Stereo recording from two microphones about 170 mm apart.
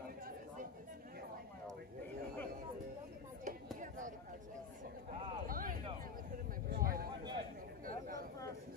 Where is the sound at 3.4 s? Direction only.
50° right (ahead or behind).